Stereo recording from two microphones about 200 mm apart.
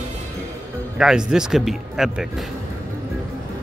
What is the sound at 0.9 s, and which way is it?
Speech, 5° right (ahead or behind).